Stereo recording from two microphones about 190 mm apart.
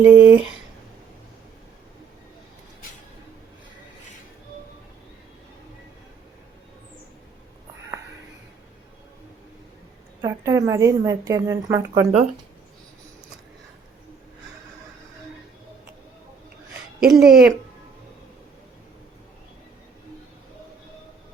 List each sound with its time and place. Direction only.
0.0 s speech: 10° right (ahead or behind)
10.2 s a woman's voice: 15° right (ahead or behind)
17.0 s speech: 5° right (ahead or behind)